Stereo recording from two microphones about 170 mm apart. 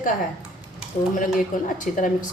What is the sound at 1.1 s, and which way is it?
Speech, 50° left (ahead or behind).